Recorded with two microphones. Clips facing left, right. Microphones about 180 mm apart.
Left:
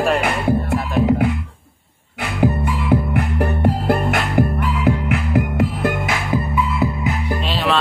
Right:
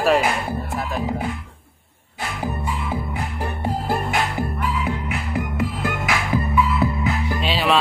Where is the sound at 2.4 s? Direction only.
65° left (ahead or behind).